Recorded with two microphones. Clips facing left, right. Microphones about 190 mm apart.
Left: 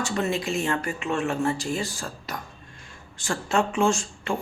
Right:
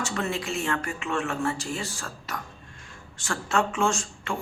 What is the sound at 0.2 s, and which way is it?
Speech, 15° left (ahead or behind).